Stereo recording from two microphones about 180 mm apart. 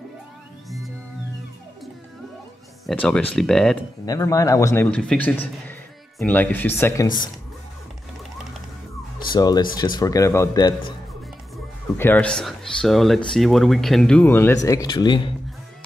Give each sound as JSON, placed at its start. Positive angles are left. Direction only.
{"t": 2.9, "sound": "speech", "side_deg": 5}
{"t": 4.0, "sound": "a man's voice", "side_deg": 20}
{"t": 9.3, "sound": "speech", "side_deg": 25}
{"t": 12.0, "sound": "a man's voice", "side_deg": 10}